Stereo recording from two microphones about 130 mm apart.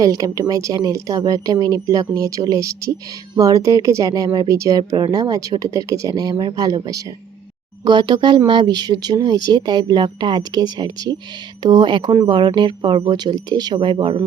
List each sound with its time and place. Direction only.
0.0 s speech: 25° right (ahead or behind)